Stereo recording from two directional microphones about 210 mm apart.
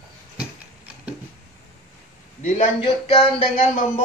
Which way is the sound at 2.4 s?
30° left (ahead or behind).